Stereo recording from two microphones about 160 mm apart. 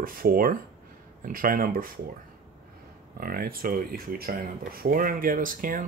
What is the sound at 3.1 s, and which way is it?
Speech, 65° right (ahead or behind).